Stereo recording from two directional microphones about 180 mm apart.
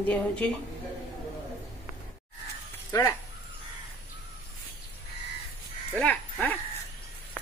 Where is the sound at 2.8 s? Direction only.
15° left (ahead or behind).